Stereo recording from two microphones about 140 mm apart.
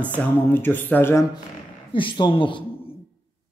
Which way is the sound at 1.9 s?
35° left (ahead or behind).